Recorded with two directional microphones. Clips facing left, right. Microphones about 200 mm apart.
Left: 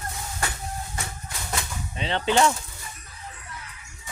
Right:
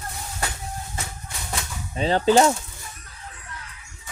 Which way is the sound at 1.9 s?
40° right (ahead or behind).